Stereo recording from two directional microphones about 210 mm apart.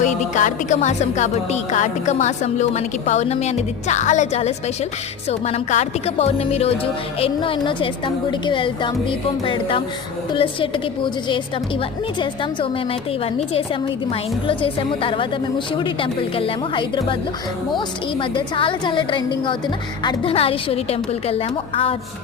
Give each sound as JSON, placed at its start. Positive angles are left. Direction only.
{"t": 0.0, "sound": "a woman's voice", "side_deg": 35}